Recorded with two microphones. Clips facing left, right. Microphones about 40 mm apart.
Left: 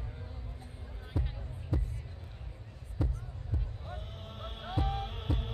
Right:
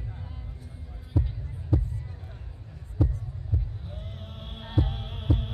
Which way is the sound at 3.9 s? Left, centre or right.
Centre.